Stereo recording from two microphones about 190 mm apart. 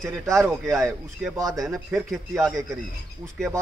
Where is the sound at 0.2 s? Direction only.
15° right (ahead or behind).